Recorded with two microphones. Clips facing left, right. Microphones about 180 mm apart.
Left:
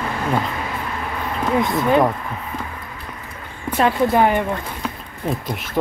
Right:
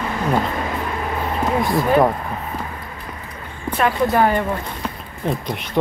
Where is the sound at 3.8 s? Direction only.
20° left (ahead or behind).